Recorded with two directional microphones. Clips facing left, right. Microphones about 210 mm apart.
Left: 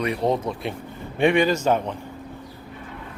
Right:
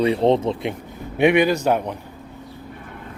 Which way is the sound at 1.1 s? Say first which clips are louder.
Right 3 dB; 10° right (ahead or behind).